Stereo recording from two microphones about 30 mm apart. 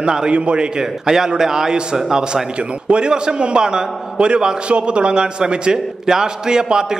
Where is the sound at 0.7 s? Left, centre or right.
Centre.